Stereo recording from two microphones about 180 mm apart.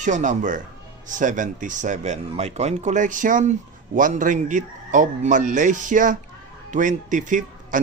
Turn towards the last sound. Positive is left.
turn(degrees=-45)  # may be behind; listen again after turning